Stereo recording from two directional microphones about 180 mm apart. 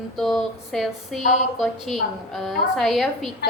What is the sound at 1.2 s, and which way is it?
Speech, 40° left (ahead or behind).